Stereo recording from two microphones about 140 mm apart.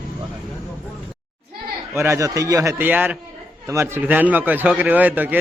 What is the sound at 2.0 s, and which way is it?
A man's voice, 20° right (ahead or behind).